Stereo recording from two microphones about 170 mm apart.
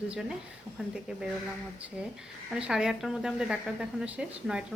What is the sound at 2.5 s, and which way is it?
Speech, 5° right (ahead or behind).